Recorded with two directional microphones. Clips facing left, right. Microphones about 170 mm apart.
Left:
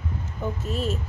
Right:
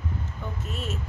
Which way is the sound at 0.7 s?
35° left (ahead or behind).